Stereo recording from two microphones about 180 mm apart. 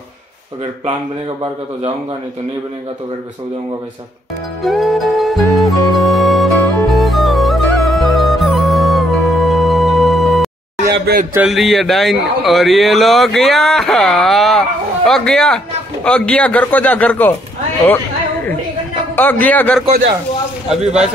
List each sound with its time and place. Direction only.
4.6 s music: centre (ahead or behind)
10.9 s speech: 60° right (ahead or behind)
11.3 s a man's voice: centre (ahead or behind)
17.8 s a sound: 10° left (ahead or behind)
19.1 s a man's voice: 10° left (ahead or behind)
20.6 s speech: 5° right (ahead or behind)